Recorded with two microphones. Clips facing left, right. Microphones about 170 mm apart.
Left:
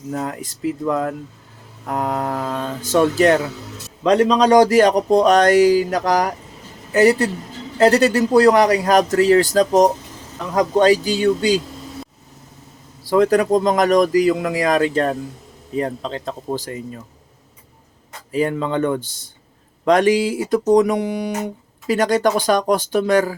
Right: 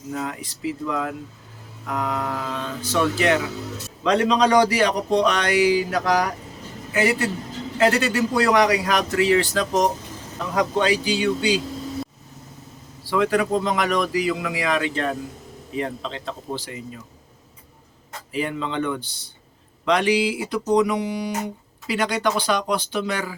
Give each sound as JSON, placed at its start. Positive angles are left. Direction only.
{"t": 0.1, "sound": "speech", "side_deg": 45}
{"t": 13.1, "sound": "speech", "side_deg": 40}
{"t": 18.3, "sound": "speech", "side_deg": 40}